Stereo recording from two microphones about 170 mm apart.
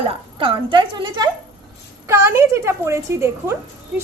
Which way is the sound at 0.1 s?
30° right (ahead or behind).